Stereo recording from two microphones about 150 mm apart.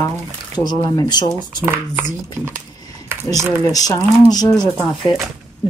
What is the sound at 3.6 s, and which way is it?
Speech, 25° left (ahead or behind).